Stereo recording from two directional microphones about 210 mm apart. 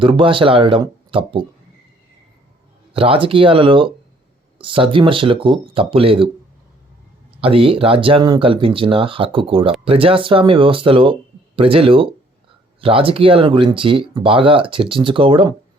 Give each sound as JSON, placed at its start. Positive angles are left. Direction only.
{"t": 0.0, "sound": "speech", "side_deg": -25}
{"t": 2.9, "sound": "speech", "side_deg": -25}
{"t": 7.4, "sound": "speech", "side_deg": -25}